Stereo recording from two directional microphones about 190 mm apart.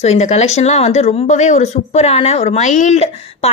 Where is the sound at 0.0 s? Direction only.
35° left (ahead or behind).